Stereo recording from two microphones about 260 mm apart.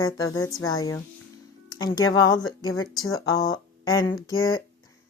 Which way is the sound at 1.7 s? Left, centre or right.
Centre.